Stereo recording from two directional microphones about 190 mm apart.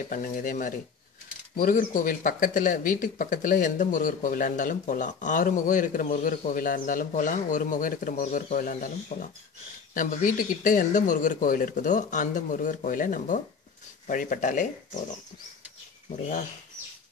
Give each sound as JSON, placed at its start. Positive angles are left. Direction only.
{"t": 0.1, "sound": "speech", "side_deg": 45}